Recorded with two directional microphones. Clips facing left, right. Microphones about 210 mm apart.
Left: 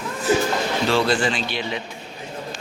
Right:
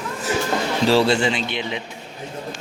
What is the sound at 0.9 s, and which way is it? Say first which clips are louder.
Speech: right 4 dB; 30° right (ahead or behind).